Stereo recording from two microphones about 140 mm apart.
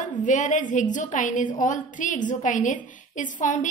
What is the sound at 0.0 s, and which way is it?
A woman's voice, 65° left (ahead or behind).